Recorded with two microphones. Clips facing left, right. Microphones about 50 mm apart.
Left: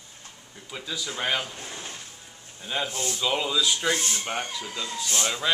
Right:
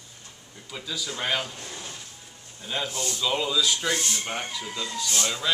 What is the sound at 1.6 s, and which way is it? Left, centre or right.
Speech, centre.